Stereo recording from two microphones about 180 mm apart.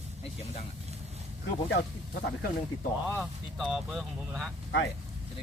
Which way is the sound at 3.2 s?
5° right (ahead or behind).